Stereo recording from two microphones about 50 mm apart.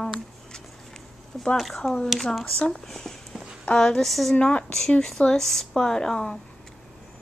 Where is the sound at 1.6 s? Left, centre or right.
Centre.